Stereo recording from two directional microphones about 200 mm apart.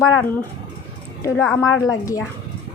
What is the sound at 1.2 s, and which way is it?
Speech, 15° left (ahead or behind).